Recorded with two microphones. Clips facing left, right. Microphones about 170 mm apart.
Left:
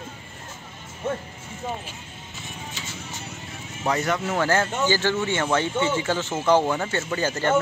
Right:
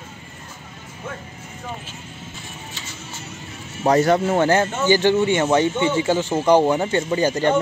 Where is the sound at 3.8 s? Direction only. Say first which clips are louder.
Right 8 dB; 35° right (ahead or behind); by 7.5 s 15° right (ahead or behind).